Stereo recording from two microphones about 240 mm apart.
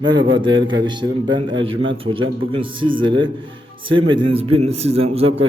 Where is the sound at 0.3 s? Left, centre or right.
Centre.